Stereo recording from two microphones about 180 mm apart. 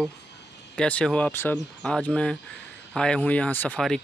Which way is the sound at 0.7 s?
5° left (ahead or behind).